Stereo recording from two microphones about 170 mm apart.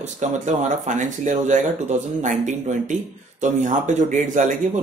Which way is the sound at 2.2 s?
45° right (ahead or behind).